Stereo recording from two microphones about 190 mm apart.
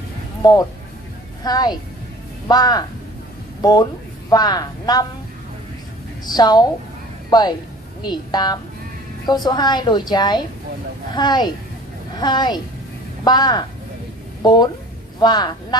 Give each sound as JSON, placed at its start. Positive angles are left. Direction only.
{"t": 0.4, "sound": "a woman's voice", "side_deg": 20}
{"t": 4.3, "sound": "a woman's voice", "side_deg": 20}
{"t": 6.2, "sound": "a woman's voice", "side_deg": 20}